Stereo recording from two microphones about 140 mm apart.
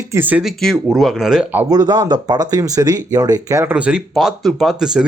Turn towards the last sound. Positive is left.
turn(degrees=-5)  # may be behind; listen again after turning